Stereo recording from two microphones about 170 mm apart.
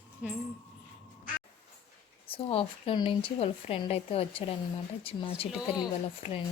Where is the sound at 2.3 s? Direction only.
35° left (ahead or behind).